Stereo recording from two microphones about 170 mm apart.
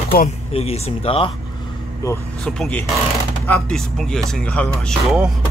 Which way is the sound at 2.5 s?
5° left (ahead or behind).